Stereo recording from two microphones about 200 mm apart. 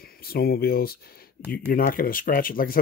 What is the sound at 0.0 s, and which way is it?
Speech, 50° left (ahead or behind).